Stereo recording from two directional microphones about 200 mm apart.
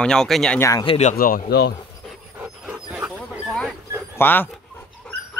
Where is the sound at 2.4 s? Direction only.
5° right (ahead or behind).